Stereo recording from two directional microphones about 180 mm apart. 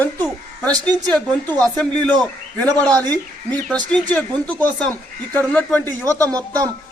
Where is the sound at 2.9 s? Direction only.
20° right (ahead or behind).